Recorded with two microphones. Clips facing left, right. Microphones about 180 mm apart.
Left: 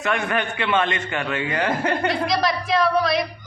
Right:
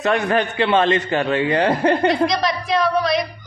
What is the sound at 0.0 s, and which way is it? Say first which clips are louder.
A man's voice: right 5 dB; 35° right (ahead or behind).